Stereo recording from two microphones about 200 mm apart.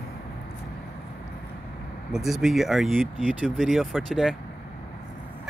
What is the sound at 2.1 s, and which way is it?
Speech, centre (ahead or behind).